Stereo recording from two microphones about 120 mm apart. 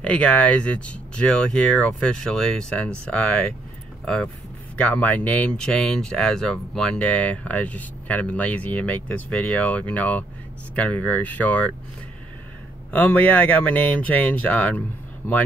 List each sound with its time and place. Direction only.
0.0 s speech: 10° left (ahead or behind)
12.9 s speech: 15° left (ahead or behind)